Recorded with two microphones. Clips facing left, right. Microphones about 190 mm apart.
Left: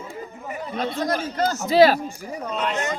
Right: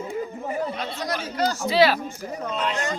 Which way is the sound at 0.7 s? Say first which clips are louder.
Left 5 dB; 50° left (ahead or behind).